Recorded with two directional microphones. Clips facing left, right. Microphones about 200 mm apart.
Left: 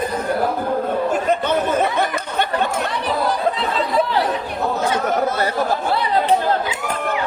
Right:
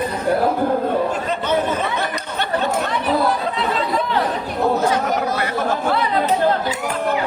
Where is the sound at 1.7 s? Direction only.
50° left (ahead or behind).